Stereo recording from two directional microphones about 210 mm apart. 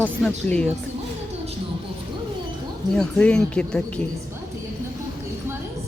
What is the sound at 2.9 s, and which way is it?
Speech, 5° left (ahead or behind).